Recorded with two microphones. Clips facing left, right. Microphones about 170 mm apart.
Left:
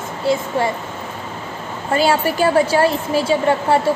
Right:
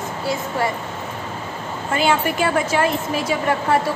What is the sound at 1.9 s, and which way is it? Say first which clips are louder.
A woman's voice: left 3 dB; 35° left (ahead or behind).